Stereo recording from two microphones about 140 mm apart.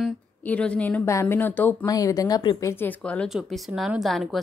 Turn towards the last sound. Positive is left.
turn(degrees=0)  # may be behind; listen again after turning